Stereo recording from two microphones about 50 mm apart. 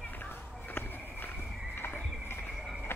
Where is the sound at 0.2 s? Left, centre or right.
Left.